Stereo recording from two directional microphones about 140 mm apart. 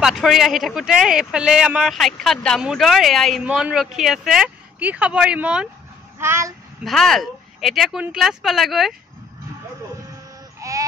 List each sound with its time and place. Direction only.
0.0 s speech: centre (ahead or behind)
6.1 s speech: 20° right (ahead or behind)
6.8 s speech: centre (ahead or behind)
10.6 s a sound: 25° right (ahead or behind)